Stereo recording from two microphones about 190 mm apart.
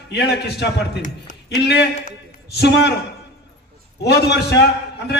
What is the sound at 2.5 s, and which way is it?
Speech, 65° left (ahead or behind).